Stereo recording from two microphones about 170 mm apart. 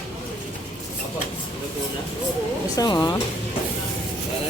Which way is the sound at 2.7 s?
20° left (ahead or behind).